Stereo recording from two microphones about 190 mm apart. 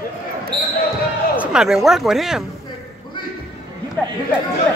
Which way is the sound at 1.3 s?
5° right (ahead or behind).